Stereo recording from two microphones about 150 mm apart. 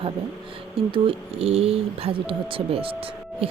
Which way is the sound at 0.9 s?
35° right (ahead or behind).